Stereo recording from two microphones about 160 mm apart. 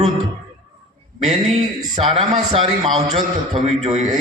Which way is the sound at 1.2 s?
45° right (ahead or behind).